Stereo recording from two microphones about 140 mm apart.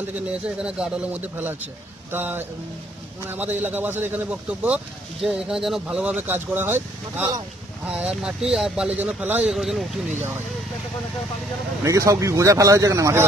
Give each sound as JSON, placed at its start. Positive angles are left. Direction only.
{"t": 0.6, "sound": "a man's voice", "side_deg": -5}
{"t": 11.8, "sound": "speech", "side_deg": -20}